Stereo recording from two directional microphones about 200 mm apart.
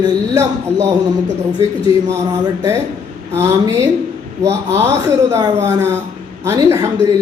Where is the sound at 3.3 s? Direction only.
15° right (ahead or behind).